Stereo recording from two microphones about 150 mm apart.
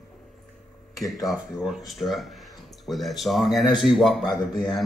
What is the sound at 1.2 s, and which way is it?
Speech, centre (ahead or behind).